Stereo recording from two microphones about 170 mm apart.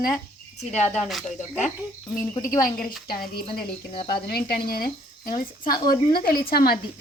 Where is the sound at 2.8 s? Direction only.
60° left (ahead or behind).